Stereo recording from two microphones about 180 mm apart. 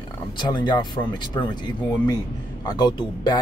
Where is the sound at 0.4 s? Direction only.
25° left (ahead or behind).